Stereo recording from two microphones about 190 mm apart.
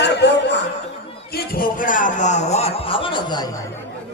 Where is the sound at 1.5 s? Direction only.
45° left (ahead or behind); by 3.5 s 25° left (ahead or behind).